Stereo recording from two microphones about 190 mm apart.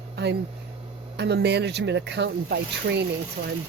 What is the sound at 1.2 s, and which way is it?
Speech, 60° right (ahead or behind).